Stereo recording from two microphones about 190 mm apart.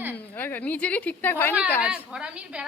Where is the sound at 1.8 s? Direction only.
5° right (ahead or behind).